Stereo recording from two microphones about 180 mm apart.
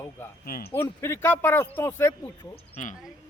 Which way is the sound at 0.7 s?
15° left (ahead or behind).